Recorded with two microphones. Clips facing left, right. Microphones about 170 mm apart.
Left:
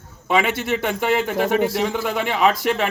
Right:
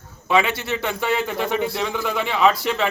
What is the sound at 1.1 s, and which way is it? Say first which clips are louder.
Speech: left 4 dB; 50° left (ahead or behind).